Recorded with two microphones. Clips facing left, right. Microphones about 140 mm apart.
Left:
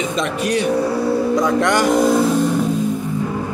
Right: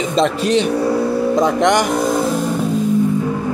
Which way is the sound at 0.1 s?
30° right (ahead or behind).